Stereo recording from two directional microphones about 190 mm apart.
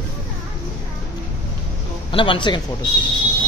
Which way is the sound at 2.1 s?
25° left (ahead or behind).